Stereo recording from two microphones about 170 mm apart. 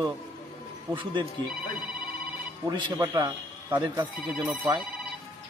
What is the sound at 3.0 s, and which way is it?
A man's voice, 15° right (ahead or behind).